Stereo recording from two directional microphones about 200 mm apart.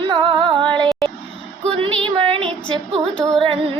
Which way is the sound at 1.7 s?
25° right (ahead or behind).